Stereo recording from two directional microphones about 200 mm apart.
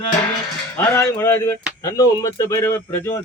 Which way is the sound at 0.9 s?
15° left (ahead or behind).